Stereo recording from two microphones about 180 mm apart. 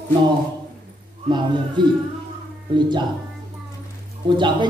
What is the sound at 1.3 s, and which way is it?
A man's voice, 25° right (ahead or behind).